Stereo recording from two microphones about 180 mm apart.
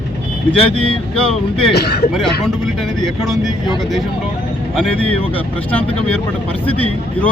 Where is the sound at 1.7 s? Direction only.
65° left (ahead or behind).